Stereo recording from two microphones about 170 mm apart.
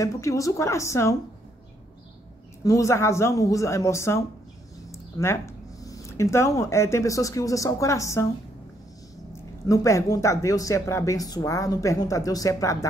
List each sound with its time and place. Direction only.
0.0 s speech: 20° left (ahead or behind)
2.6 s speech: 20° left (ahead or behind)
9.7 s speech: 20° left (ahead or behind)